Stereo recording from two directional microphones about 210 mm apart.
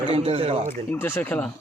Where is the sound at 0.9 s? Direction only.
10° left (ahead or behind).